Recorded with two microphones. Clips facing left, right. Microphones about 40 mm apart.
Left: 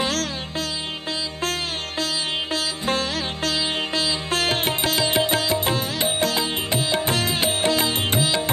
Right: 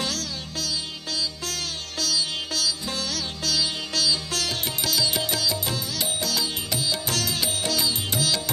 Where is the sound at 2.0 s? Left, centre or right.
Left.